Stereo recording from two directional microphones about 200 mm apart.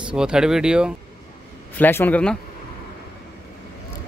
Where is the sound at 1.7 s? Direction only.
10° left (ahead or behind).